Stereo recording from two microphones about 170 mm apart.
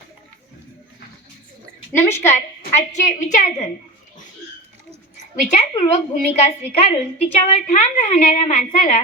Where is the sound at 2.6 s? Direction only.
45° left (ahead or behind).